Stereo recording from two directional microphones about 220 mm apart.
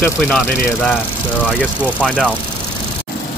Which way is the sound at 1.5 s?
5° left (ahead or behind).